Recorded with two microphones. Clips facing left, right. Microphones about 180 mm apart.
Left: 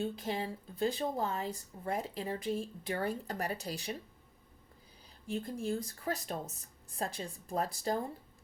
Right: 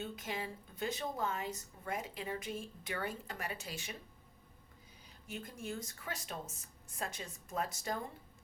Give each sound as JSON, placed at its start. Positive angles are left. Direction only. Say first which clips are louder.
{"t": 0.0, "sound": "speech", "louder": "left 6 dB", "side_deg": 35}
{"t": 5.2, "sound": "speech", "louder": "left 8 dB", "side_deg": 35}